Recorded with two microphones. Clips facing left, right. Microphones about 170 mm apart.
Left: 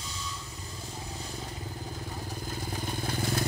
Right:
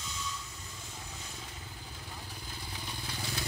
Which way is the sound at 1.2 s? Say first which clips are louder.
Left 8 dB; 40° left (ahead or behind).